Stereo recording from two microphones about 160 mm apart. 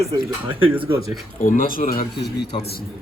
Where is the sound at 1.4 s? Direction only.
60° left (ahead or behind).